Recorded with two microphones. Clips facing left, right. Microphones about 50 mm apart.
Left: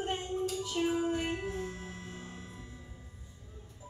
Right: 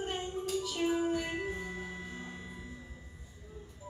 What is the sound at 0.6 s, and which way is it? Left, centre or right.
Music, centre.